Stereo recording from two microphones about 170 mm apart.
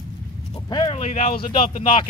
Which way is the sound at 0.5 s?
30° left (ahead or behind).